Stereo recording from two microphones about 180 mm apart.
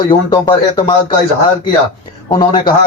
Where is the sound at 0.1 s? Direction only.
25° left (ahead or behind).